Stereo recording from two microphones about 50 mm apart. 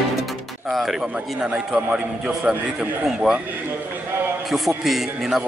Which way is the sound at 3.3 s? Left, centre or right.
Centre.